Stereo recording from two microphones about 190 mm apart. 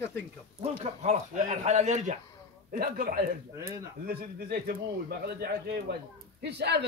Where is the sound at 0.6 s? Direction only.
35° right (ahead or behind).